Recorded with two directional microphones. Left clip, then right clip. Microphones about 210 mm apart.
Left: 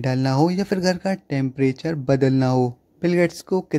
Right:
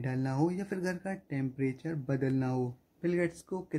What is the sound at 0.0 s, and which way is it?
Speech, 40° left (ahead or behind).